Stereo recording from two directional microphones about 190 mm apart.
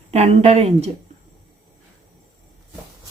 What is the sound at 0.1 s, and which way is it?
Speech, 35° right (ahead or behind).